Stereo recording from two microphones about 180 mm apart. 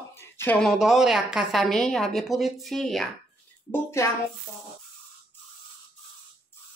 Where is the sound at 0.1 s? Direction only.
15° left (ahead or behind).